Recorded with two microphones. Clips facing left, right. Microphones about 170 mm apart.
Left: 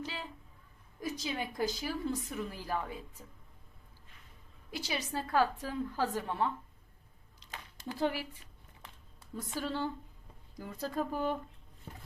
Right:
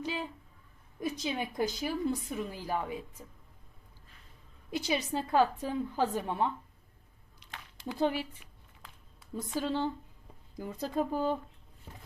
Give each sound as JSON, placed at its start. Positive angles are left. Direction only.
{"t": 0.0, "sound": "speech", "side_deg": -15}
{"t": 4.7, "sound": "speech", "side_deg": -20}
{"t": 7.9, "sound": "speech", "side_deg": -20}
{"t": 9.6, "sound": "a woman's voice", "side_deg": -15}